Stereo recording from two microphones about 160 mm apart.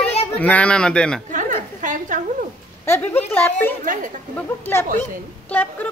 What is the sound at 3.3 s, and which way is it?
Speech, 10° left (ahead or behind).